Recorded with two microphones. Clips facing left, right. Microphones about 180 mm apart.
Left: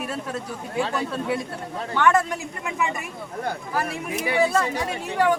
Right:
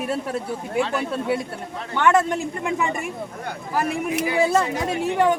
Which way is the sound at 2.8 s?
30° right (ahead or behind).